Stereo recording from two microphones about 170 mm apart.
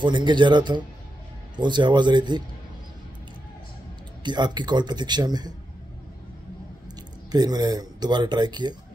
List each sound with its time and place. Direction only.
0.0 s speech: 25° right (ahead or behind)
4.2 s speech: 25° right (ahead or behind)
7.2 s speech: 25° right (ahead or behind)